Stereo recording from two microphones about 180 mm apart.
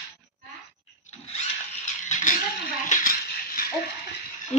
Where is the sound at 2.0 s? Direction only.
40° left (ahead or behind).